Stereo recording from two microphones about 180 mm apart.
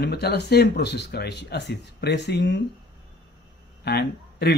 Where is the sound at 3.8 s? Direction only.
60° left (ahead or behind).